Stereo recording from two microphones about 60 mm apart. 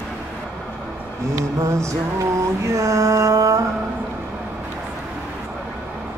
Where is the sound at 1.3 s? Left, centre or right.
Right.